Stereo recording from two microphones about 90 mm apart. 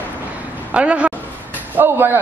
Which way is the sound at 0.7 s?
15° right (ahead or behind).